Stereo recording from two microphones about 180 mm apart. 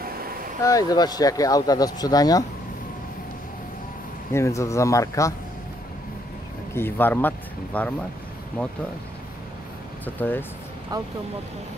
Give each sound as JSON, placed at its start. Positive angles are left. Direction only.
{"t": 0.6, "sound": "speech", "side_deg": 20}
{"t": 4.3, "sound": "speech", "side_deg": 15}
{"t": 6.7, "sound": "speech", "side_deg": 10}
{"t": 10.0, "sound": "speech", "side_deg": 10}